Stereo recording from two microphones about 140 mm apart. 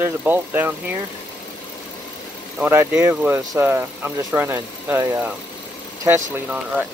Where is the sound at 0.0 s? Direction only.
15° right (ahead or behind).